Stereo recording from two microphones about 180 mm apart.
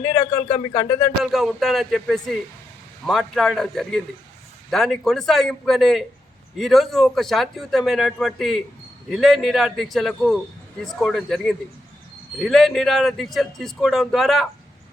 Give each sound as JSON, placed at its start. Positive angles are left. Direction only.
{"t": 0.0, "sound": "a man's voice", "side_deg": 15}
{"t": 1.2, "sound": "speech", "side_deg": 0}